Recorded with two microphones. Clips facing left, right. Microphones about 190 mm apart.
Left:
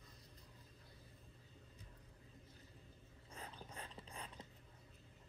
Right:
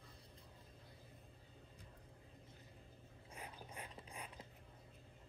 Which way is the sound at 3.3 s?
15° right (ahead or behind).